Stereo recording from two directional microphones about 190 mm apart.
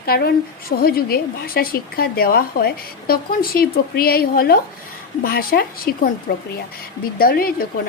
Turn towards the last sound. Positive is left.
turn(degrees=50)  # may be behind; listen again after turning